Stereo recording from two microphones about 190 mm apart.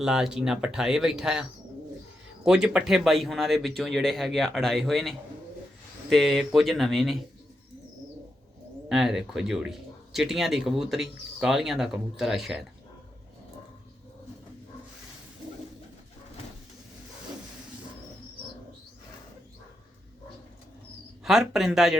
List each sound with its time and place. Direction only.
0.0 s speech: 5° right (ahead or behind)
8.9 s speech: 5° right (ahead or behind)
21.2 s speech: centre (ahead or behind)